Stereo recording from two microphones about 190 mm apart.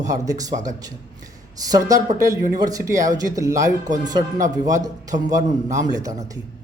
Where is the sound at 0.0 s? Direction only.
20° right (ahead or behind).